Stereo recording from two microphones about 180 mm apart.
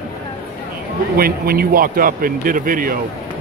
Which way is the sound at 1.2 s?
55° right (ahead or behind).